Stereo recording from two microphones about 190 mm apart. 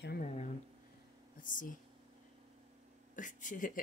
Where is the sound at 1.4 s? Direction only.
45° left (ahead or behind).